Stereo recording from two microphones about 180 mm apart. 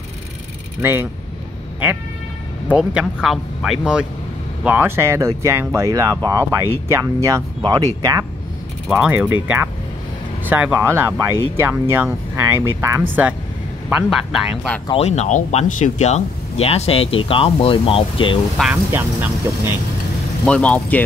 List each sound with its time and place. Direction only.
0.7 s speech: 10° right (ahead or behind)
2.7 s speech: 5° right (ahead or behind); by 8.2 s 20° right (ahead or behind)
8.8 s speech: 5° right (ahead or behind)
13.8 s speech: 5° right (ahead or behind)
14.9 s speech: 35° left (ahead or behind)
18.6 s speech: 10° right (ahead or behind)
20.4 s speech: 5° left (ahead or behind)